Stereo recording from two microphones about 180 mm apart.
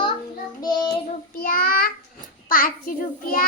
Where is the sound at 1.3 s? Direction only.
55° left (ahead or behind).